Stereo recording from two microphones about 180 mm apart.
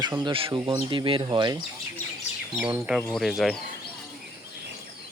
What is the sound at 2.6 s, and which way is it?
Speech, 5° right (ahead or behind).